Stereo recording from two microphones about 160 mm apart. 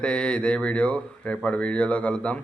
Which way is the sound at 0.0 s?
5° left (ahead or behind).